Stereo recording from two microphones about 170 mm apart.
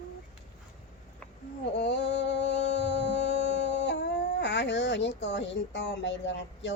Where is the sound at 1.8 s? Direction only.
90° left.